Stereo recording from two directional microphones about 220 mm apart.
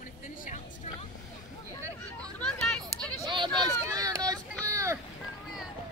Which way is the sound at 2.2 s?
5° left (ahead or behind).